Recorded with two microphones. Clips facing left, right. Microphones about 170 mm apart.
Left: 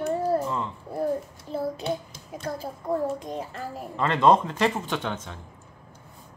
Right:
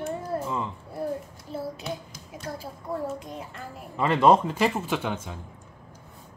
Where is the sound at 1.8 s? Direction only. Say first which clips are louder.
Left 5 dB; 30° left (ahead or behind).